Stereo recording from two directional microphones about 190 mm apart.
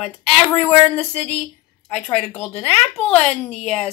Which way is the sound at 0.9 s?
5° left (ahead or behind).